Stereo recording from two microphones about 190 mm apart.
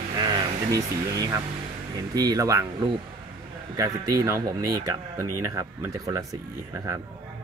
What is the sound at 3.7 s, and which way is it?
Speech, 20° right (ahead or behind).